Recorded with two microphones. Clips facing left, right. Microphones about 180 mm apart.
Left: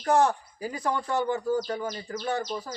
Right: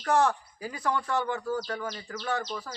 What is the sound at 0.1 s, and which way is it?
Speech, 20° left (ahead or behind).